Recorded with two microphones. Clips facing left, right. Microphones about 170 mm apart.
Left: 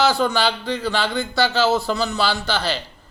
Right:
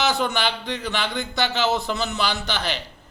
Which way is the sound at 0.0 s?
20° right (ahead or behind).